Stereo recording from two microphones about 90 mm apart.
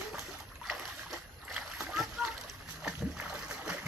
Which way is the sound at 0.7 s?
Centre (ahead or behind).